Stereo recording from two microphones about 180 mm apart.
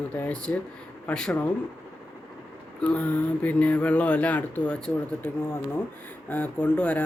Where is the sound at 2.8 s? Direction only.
10° left (ahead or behind).